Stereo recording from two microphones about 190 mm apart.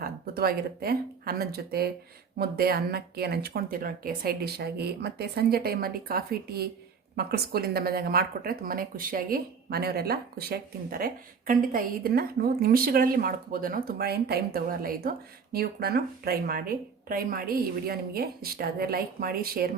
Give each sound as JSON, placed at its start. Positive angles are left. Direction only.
{"t": 0.0, "sound": "speech", "side_deg": -55}